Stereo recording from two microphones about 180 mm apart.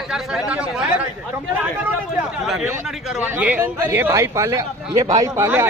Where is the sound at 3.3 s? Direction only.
10° right (ahead or behind).